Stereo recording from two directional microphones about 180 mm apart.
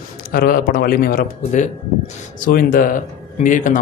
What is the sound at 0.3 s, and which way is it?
A man's voice, 55° left (ahead or behind).